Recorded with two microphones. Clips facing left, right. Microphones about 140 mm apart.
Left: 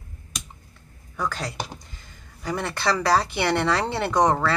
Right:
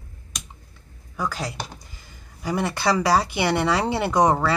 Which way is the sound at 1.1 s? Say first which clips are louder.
Even; 5° right (ahead or behind).